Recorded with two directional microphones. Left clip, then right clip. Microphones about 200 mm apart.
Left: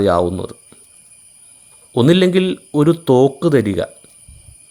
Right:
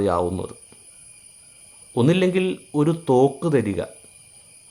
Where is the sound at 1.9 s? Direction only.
30° left (ahead or behind).